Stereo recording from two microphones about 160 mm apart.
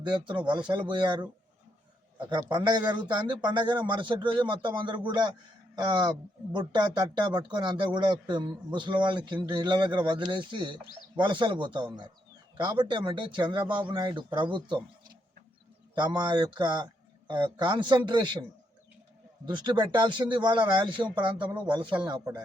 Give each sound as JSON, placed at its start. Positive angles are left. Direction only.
{"t": 0.0, "sound": "speech", "side_deg": -30}
{"t": 16.0, "sound": "speech", "side_deg": -30}
{"t": 19.5, "sound": "speech", "side_deg": -30}